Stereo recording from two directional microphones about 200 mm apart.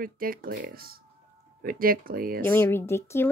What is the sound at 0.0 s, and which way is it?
Speech, 45° right (ahead or behind).